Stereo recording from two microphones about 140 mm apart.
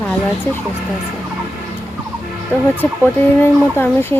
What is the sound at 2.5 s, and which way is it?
Speech, 15° left (ahead or behind).